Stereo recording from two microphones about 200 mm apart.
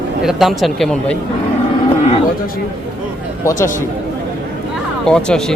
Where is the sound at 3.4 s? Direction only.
15° left (ahead or behind).